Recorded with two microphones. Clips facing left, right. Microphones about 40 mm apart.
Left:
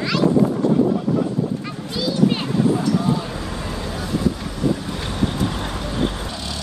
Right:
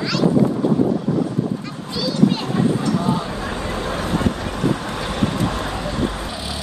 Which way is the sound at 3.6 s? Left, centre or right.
Right.